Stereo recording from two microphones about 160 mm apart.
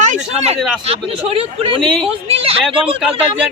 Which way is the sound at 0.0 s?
50° right (ahead or behind).